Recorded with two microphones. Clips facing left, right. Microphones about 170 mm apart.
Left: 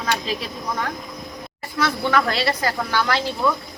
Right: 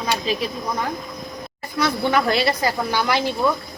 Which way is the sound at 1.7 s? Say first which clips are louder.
Right 1 dB; 15° right (ahead or behind).